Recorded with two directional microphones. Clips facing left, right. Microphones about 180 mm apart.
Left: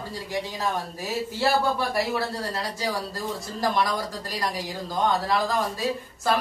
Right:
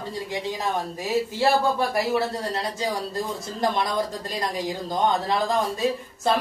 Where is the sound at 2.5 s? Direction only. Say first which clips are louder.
Right 2 dB; 20° right (ahead or behind).